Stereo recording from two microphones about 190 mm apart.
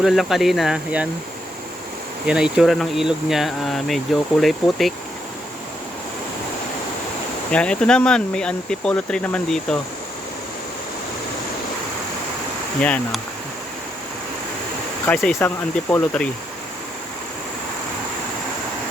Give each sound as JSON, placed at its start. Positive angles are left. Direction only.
{"t": 0.0, "sound": "speech", "side_deg": 0}
{"t": 2.2, "sound": "speech", "side_deg": -5}
{"t": 7.5, "sound": "speech", "side_deg": 5}
{"t": 12.8, "sound": "speech", "side_deg": 5}
{"t": 15.0, "sound": "speech", "side_deg": 10}